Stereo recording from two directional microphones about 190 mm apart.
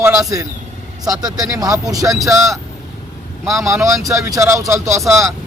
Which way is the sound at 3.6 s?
15° right (ahead or behind).